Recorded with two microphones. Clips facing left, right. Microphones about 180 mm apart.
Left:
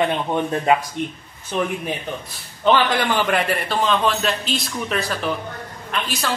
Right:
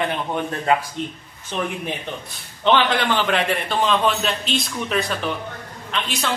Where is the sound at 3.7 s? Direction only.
Centre (ahead or behind).